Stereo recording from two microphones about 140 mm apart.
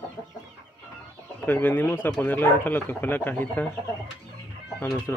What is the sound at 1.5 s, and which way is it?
Speech, 15° left (ahead or behind).